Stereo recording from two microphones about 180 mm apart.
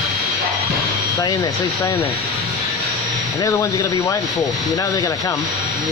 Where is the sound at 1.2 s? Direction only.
20° left (ahead or behind).